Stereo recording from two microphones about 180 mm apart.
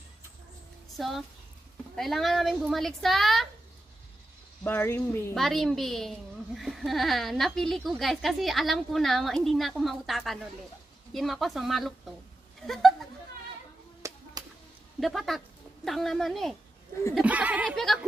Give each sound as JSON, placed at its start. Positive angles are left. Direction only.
{"t": 0.9, "sound": "a woman's voice", "side_deg": 0}
{"t": 4.6, "sound": "speech", "side_deg": 10}
{"t": 5.3, "sound": "a woman's voice", "side_deg": 0}
{"t": 14.0, "sound": "a sound", "side_deg": -15}
{"t": 15.0, "sound": "a woman's voice", "side_deg": 0}